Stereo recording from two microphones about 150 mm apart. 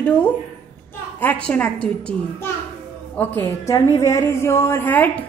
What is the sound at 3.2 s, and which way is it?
A woman's voice, 10° left (ahead or behind).